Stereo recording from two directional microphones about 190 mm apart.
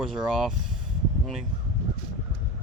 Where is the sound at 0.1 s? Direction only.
Centre (ahead or behind).